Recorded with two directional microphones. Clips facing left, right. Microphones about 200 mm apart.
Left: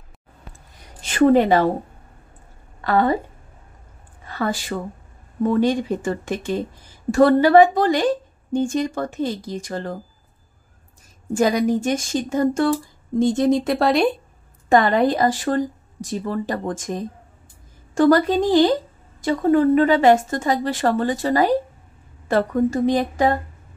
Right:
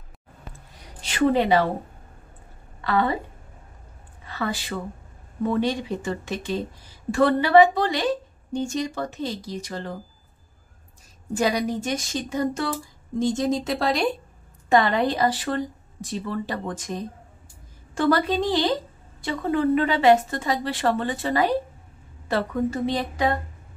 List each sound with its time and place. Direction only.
1.0 s a woman's voice: 50° left (ahead or behind)
2.8 s a woman's voice: 45° left (ahead or behind)
4.3 s a woman's voice: 45° left (ahead or behind)
11.3 s a woman's voice: 50° left (ahead or behind)